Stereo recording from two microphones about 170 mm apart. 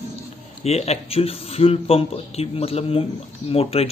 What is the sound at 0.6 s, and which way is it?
Speech, 40° left (ahead or behind).